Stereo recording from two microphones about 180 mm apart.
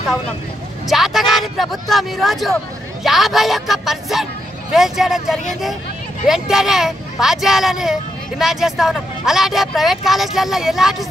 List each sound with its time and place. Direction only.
0.8 s speech: centre (ahead or behind)